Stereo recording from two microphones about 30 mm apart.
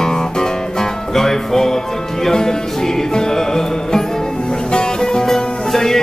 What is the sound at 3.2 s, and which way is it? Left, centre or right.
Music, left.